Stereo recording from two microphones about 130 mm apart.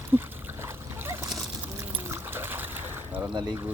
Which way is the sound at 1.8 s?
20° right (ahead or behind).